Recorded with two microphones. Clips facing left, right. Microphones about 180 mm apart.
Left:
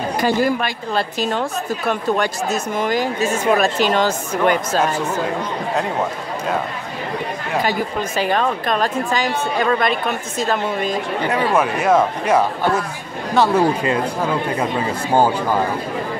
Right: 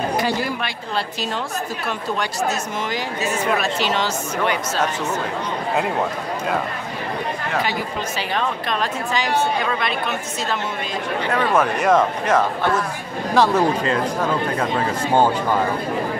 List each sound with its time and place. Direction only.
0.2 s a woman's voice: 45° left (ahead or behind)
2.8 s a woman's voice: 50° left (ahead or behind)
8.2 s a woman's voice: 45° left (ahead or behind)
11.3 s speech: 10° left (ahead or behind)